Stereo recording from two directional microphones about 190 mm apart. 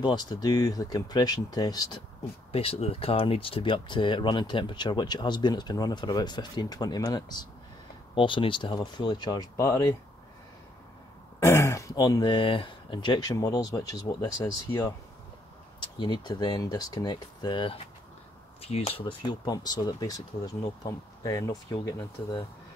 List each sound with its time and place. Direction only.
0.0 s speech: 20° left (ahead or behind)
2.5 s speech: 30° left (ahead or behind)
11.3 s speech: 15° left (ahead or behind)